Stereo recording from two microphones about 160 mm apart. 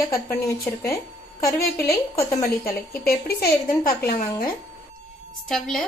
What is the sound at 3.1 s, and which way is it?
A woman's voice, 70° left (ahead or behind).